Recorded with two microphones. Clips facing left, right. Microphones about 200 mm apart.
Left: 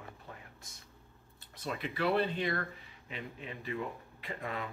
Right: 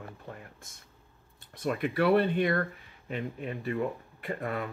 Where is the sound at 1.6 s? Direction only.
55° right (ahead or behind).